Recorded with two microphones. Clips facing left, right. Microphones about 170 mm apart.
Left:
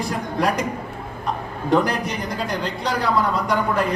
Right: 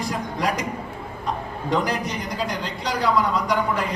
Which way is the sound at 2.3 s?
55° left (ahead or behind).